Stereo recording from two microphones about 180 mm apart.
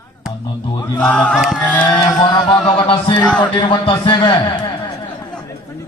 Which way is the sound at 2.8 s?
30° left (ahead or behind).